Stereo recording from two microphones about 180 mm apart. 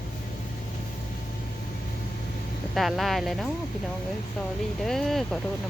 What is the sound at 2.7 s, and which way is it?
Speech, centre (ahead or behind).